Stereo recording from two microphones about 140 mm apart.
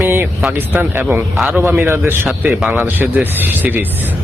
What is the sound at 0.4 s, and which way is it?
Speech, 15° right (ahead or behind).